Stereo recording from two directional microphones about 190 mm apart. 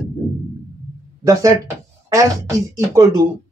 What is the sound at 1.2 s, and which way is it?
Speech, 15° right (ahead or behind).